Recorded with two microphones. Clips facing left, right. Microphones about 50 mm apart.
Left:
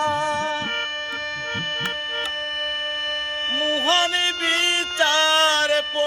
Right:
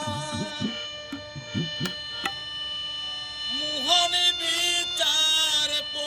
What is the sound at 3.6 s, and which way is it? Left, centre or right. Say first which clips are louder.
Music: left 5 dB; left.